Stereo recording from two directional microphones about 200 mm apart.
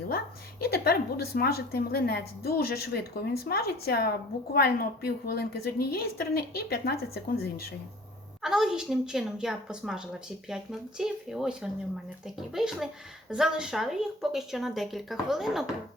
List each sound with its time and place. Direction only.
0.6 s a woman's voice: 50° left (ahead or behind)
8.4 s speech: centre (ahead or behind)